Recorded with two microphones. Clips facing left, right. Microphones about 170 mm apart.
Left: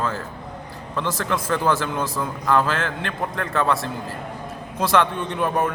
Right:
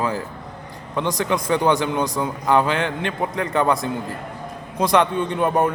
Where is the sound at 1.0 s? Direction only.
5° left (ahead or behind).